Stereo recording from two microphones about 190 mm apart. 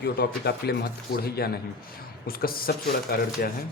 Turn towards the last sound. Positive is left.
turn(degrees=50)  # may be behind; listen again after turning